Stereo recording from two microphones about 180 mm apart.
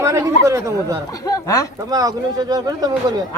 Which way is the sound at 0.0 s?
15° right (ahead or behind).